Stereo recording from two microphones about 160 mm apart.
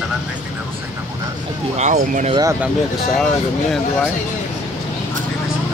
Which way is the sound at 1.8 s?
50° right (ahead or behind).